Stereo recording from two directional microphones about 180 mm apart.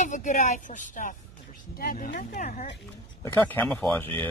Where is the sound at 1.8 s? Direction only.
55° left (ahead or behind).